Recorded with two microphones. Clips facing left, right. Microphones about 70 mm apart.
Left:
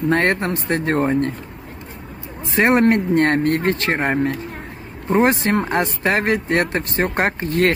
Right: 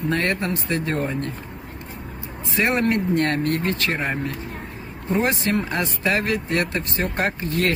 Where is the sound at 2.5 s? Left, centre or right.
Left.